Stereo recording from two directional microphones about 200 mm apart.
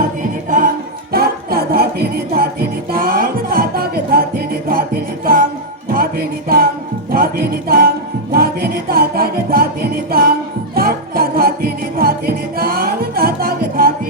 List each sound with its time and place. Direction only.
0.2 s music: 40° right (ahead or behind)